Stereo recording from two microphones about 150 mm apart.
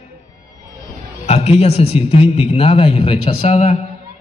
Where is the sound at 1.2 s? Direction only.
45° left (ahead or behind).